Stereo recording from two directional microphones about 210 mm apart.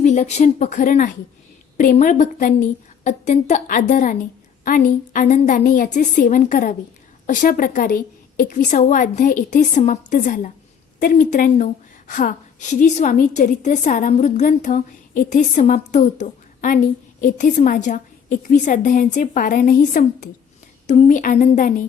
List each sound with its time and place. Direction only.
0.0 s a woman's voice: 35° left (ahead or behind)